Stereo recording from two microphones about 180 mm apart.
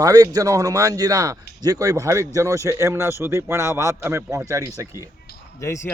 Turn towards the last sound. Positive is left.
turn(degrees=15)  # may be behind; listen again after turning